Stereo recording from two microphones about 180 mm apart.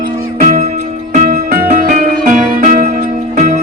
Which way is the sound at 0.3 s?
45° right (ahead or behind).